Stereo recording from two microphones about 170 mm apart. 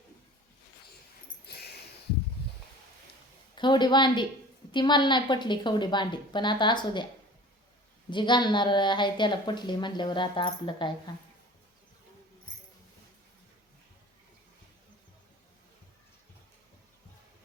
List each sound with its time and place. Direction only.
1.5 s a sound: 75° left (ahead or behind)
3.5 s a woman's voice: 25° left (ahead or behind)
8.1 s a woman's voice: 25° left (ahead or behind)